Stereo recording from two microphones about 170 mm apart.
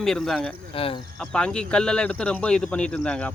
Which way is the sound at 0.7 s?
35° left (ahead or behind).